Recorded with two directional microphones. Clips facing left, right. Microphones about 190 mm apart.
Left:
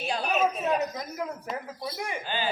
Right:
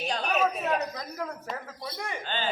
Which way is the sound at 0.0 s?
5° left (ahead or behind).